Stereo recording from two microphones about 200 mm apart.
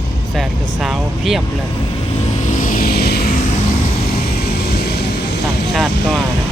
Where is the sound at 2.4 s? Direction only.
40° left (ahead or behind).